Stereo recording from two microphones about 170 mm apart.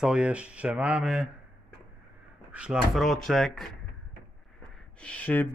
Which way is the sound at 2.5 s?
5° right (ahead or behind).